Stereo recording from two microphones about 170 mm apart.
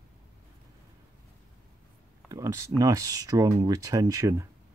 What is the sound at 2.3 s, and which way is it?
Speech, 15° right (ahead or behind).